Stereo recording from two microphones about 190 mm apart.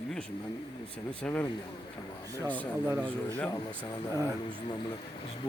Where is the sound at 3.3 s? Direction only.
10° left (ahead or behind).